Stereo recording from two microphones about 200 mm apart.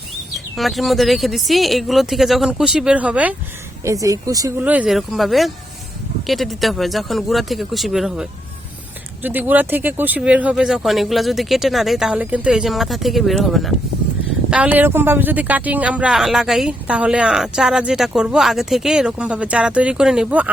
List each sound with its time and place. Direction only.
0.3 s speech: centre (ahead or behind)